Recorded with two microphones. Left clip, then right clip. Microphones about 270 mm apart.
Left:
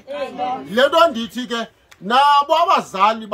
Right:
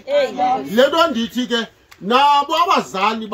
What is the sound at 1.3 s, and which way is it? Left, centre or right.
A man's voice, centre.